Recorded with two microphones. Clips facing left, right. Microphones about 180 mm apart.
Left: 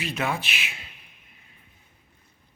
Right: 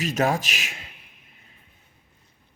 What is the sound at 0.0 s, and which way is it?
Speech, 40° right (ahead or behind).